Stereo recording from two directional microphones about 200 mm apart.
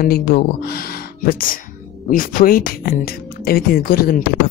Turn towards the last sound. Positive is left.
turn(degrees=50)  # may be behind; listen again after turning